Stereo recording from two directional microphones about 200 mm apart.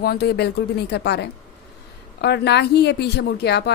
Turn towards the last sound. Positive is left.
turn(degrees=55)  # may be behind; listen again after turning